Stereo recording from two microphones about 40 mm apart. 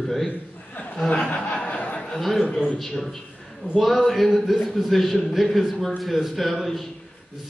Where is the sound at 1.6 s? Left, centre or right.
Left.